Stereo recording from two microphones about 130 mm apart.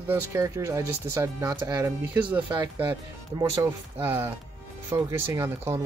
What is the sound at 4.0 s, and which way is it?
Speech, 15° right (ahead or behind).